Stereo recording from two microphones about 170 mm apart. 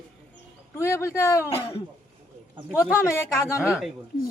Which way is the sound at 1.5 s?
35° left (ahead or behind).